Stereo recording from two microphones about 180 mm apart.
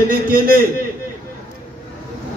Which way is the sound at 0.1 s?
55° right (ahead or behind).